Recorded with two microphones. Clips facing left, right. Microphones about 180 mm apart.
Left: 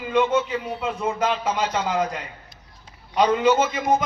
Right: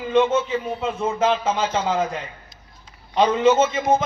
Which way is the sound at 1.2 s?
25° right (ahead or behind).